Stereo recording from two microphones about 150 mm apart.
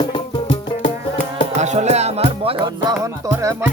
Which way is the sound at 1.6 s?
50° right (ahead or behind).